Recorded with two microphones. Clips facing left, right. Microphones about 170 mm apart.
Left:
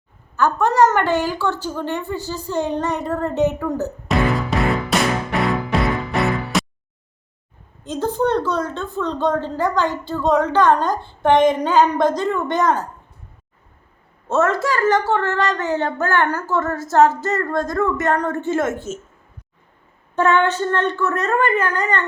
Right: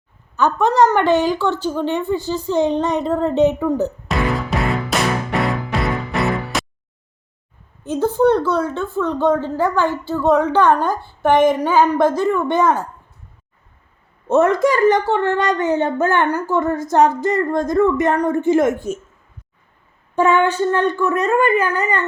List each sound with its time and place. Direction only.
0.9 s a woman's voice: 15° right (ahead or behind)
1.1 s speech: 10° left (ahead or behind)
1.4 s a woman's voice: 15° right (ahead or behind)
4.1 s music: centre (ahead or behind)
7.9 s a woman's voice: 10° right (ahead or behind)
14.3 s a woman's voice: 15° right (ahead or behind)
20.1 s a woman's voice: 10° right (ahead or behind)